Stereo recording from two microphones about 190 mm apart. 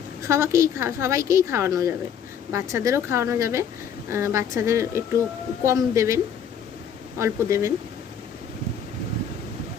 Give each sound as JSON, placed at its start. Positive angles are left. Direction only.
{"t": 0.2, "sound": "a woman's voice", "side_deg": -15}
{"t": 7.2, "sound": "a woman's voice", "side_deg": -15}